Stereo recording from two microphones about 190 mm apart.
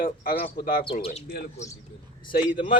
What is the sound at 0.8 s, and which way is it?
Speech, 30° left (ahead or behind).